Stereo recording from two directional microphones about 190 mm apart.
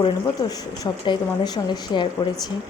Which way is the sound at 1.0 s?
20° left (ahead or behind).